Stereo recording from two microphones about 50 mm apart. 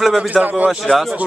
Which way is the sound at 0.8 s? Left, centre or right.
Centre.